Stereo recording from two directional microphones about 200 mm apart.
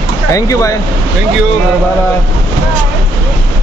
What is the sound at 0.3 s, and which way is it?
Speech, 15° left (ahead or behind).